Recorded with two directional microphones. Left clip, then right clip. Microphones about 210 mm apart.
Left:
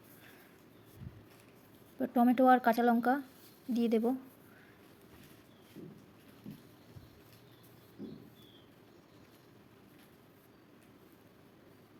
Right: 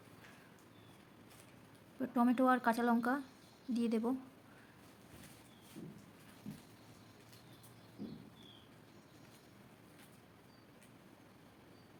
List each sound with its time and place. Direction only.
2.0 s speech: 15° left (ahead or behind)